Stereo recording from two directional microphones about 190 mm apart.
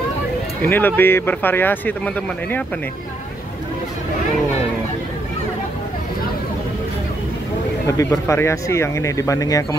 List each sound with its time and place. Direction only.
0.6 s speech: 10° left (ahead or behind)
7.8 s speech: 15° left (ahead or behind)